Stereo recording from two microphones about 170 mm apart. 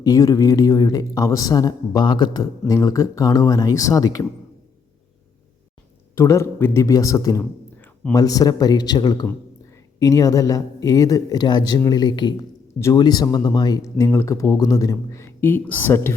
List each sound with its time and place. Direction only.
0.0 s a man's voice: 20° left (ahead or behind)
6.1 s a man's voice: 15° left (ahead or behind)